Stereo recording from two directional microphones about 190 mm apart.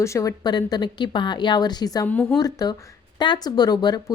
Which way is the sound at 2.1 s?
5° left (ahead or behind).